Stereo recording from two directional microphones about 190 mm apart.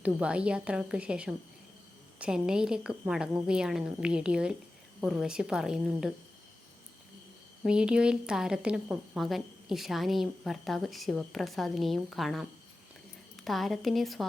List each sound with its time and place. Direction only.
0.0 s a woman's voice: 5° right (ahead or behind)
7.6 s a woman's voice: 5° right (ahead or behind)